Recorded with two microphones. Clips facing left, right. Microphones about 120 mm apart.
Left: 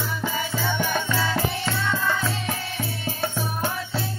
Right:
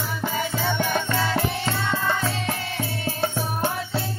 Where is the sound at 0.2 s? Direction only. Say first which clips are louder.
Right 3 dB; 20° right (ahead or behind).